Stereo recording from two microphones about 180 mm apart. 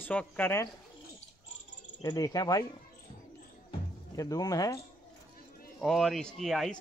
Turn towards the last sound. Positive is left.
turn(degrees=0)  # may be behind; listen again after turning